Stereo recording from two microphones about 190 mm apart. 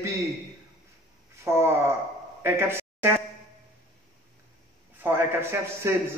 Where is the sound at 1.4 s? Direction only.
15° right (ahead or behind).